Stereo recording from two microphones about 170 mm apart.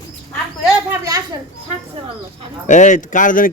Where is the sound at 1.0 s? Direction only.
20° right (ahead or behind).